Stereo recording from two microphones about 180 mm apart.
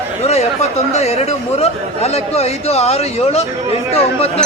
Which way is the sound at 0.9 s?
35° left (ahead or behind).